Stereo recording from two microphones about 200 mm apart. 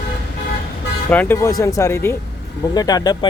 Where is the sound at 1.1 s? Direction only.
10° left (ahead or behind).